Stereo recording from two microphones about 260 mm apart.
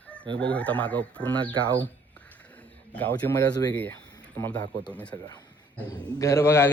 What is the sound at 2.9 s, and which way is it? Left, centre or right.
A man's voice, centre.